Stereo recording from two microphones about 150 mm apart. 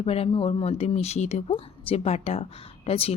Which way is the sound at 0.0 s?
40° left (ahead or behind).